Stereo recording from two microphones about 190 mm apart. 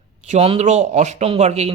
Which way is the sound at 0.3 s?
30° right (ahead or behind).